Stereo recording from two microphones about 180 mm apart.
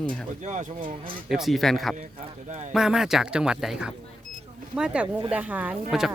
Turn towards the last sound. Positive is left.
turn(degrees=-5)  # may be behind; listen again after turning